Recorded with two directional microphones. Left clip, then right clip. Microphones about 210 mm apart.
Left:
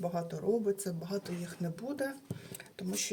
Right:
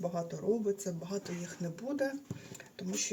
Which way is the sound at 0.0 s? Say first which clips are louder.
Left 1 dB; 25° left (ahead or behind).